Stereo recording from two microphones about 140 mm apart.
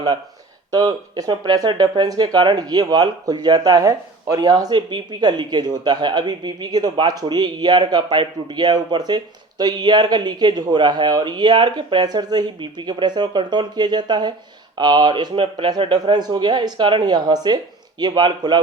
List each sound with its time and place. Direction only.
0.7 s speech: 25° right (ahead or behind)